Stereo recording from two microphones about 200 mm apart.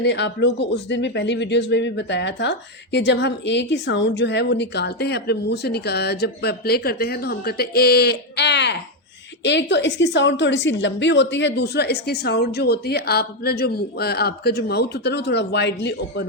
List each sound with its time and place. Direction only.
0.0 s speech: 60° left (ahead or behind)